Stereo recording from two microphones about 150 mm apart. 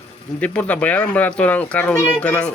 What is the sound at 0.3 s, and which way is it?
A child's voice, 10° left (ahead or behind).